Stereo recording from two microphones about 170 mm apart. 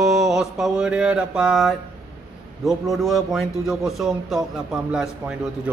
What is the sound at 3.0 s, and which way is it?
Speech, centre (ahead or behind).